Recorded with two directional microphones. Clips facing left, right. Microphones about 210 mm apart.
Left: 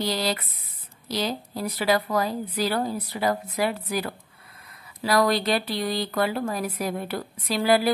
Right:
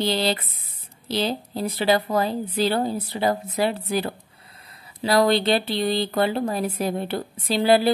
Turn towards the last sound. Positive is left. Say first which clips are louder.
# right 3 dB
turn(degrees=-30)  # may be behind; listen again after turning